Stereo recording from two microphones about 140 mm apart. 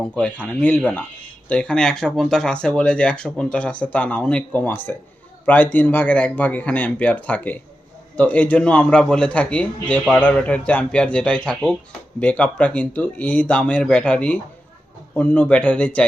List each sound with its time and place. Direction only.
0.0 s a man's voice: 5° left (ahead or behind)